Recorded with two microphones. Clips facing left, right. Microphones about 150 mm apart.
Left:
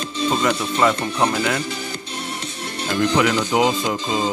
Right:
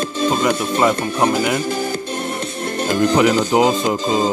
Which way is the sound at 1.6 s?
50° right (ahead or behind).